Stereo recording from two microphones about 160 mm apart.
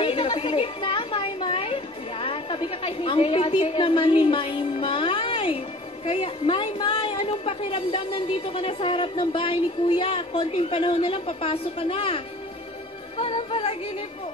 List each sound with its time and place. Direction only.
0.0 s a sound: 35° left (ahead or behind)
6.0 s a woman's voice: 35° left (ahead or behind)
13.2 s a woman's voice: 35° left (ahead or behind)